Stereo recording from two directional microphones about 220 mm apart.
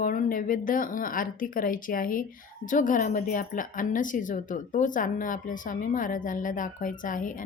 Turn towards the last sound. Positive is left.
turn(degrees=35)  # may be behind; listen again after turning